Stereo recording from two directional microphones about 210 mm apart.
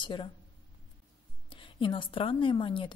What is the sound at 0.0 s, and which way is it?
Speech, 20° left (ahead or behind).